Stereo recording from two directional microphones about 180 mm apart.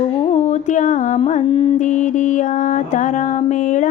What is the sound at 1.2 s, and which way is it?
Carnatic music, 35° left (ahead or behind).